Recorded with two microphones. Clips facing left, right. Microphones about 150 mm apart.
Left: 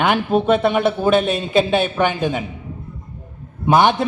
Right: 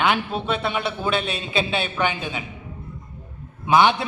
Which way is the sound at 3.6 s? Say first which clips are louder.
Left 3 dB; 50° left (ahead or behind).